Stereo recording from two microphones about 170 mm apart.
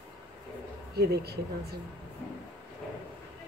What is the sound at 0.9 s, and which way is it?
Speech, 70° right (ahead or behind).